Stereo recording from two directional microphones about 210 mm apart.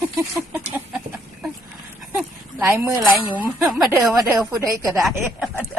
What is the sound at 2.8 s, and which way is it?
Speech, 15° right (ahead or behind).